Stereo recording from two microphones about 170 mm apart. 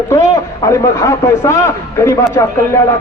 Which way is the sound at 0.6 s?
20° left (ahead or behind).